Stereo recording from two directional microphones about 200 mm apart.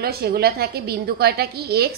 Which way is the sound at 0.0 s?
50° right (ahead or behind).